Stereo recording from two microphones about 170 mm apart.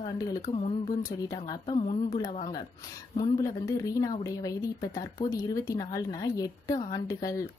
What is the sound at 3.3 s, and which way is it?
Speech, 20° left (ahead or behind).